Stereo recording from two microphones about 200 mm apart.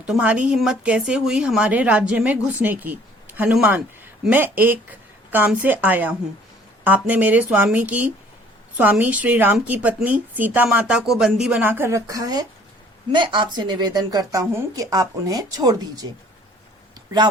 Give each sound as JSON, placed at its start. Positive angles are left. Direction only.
{"t": 0.0, "sound": "a woman's voice", "side_deg": -5}